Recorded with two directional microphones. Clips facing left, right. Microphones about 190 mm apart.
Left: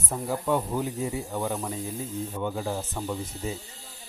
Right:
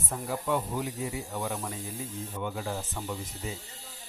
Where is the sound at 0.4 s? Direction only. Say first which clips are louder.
Left 3 dB; 40° left (ahead or behind).